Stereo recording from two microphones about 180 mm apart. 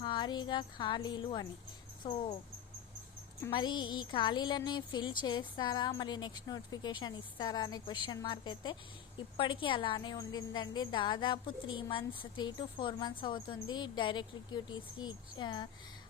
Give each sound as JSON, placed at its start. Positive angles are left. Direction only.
{"t": 0.0, "sound": "speech", "side_deg": 25}
{"t": 3.5, "sound": "a woman's voice", "side_deg": 25}